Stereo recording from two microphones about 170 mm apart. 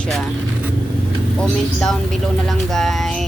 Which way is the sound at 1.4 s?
5° left (ahead or behind).